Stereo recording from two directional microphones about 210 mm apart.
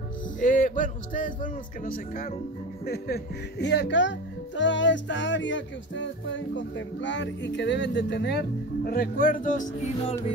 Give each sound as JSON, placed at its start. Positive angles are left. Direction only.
{"t": 0.4, "sound": "speech", "side_deg": 40}